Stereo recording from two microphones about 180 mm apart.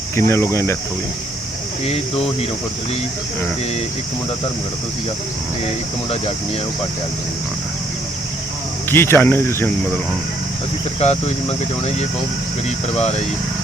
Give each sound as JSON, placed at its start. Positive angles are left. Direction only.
{"t": 0.2, "sound": "speech", "side_deg": 15}
{"t": 5.6, "sound": "speech", "side_deg": 35}
{"t": 8.9, "sound": "speech", "side_deg": 15}
{"t": 11.0, "sound": "speech", "side_deg": 35}